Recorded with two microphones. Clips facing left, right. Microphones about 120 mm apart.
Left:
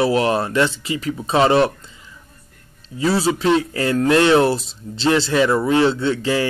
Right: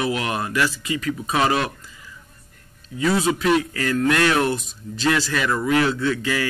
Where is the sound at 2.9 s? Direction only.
30° left (ahead or behind).